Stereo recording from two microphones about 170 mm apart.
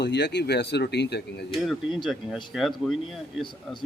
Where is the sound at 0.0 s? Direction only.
80° left.